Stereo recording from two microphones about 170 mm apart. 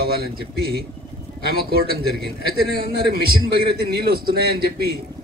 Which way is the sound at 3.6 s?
65° right (ahead or behind).